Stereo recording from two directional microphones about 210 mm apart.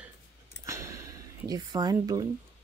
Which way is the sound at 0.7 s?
15° right (ahead or behind).